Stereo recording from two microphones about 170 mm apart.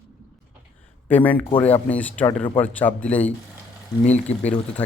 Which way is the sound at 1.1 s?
10° left (ahead or behind).